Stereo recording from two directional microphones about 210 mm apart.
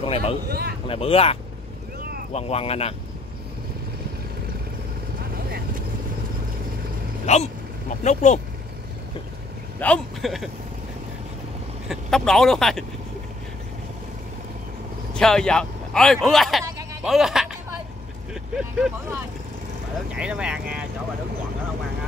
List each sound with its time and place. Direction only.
0.0 s speech: 25° left (ahead or behind)
0.5 s speech: 45° right (ahead or behind)
0.8 s speech: 25° left (ahead or behind)
7.3 s speech: 35° left (ahead or behind)
9.8 s speech: 5° left (ahead or behind)
11.9 s speech: centre (ahead or behind)
15.1 s speech: 5° left (ahead or behind)